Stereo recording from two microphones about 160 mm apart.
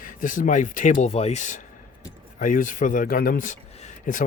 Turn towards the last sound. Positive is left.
turn(degrees=50)  # may be behind; listen again after turning